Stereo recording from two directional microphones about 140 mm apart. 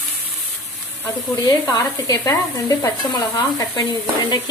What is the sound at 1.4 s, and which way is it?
Speech, 25° left (ahead or behind).